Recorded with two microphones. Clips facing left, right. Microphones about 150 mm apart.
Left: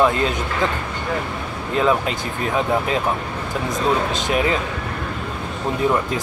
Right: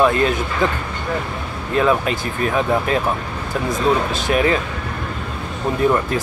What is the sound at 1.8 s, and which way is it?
Speech, 20° left (ahead or behind).